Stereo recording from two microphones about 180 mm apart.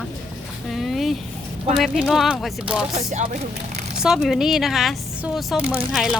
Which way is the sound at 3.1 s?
40° right (ahead or behind).